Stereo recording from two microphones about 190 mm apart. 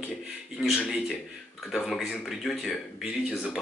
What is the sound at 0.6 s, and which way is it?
A man's voice, centre (ahead or behind).